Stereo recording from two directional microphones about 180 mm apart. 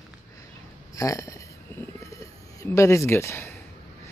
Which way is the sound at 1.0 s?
15° left (ahead or behind).